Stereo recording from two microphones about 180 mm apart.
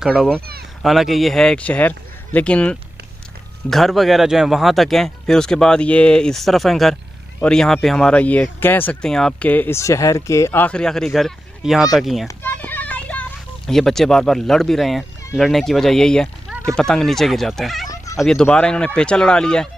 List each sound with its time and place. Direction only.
0.0 s speech: 5° right (ahead or behind)
12.3 s speech: 10° left (ahead or behind)
17.8 s a sound: 20° left (ahead or behind)
18.1 s speech: 5° left (ahead or behind)